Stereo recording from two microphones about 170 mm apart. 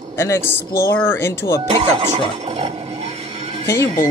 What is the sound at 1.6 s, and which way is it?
Speech, 40° right (ahead or behind).